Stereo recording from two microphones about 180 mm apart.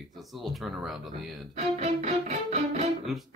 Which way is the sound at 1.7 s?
35° right (ahead or behind).